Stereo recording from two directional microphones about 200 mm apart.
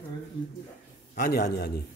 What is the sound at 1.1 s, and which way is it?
Speech, 50° left (ahead or behind).